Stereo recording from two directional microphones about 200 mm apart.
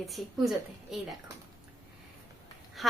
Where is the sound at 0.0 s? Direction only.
Centre (ahead or behind).